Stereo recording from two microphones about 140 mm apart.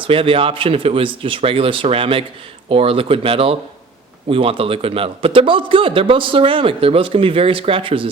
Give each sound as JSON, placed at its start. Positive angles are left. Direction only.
{"t": 0.1, "sound": "a man's voice", "side_deg": -40}